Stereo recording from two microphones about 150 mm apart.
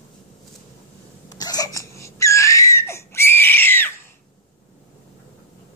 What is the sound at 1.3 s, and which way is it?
Laughter, 25° left (ahead or behind).